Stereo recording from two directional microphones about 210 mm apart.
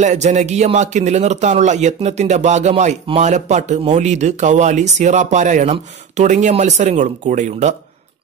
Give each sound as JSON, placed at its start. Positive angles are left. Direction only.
{"t": 0.0, "sound": "a man's voice", "side_deg": -35}